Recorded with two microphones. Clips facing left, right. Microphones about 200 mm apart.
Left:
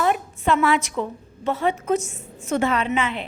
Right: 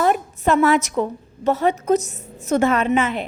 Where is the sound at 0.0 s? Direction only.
45° right (ahead or behind).